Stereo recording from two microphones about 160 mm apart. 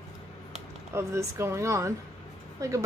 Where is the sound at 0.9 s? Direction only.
15° right (ahead or behind).